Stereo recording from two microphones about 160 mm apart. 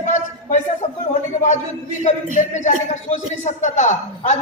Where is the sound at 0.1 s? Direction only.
45° left (ahead or behind).